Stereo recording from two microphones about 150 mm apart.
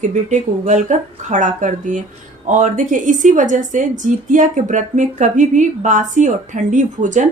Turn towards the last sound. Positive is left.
turn(degrees=-55)  # may be behind; listen again after turning